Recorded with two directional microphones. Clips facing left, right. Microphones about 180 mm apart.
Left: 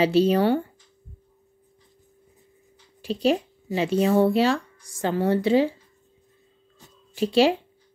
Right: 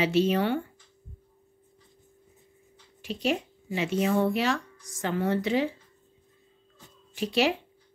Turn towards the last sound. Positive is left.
turn(degrees=30)  # may be behind; listen again after turning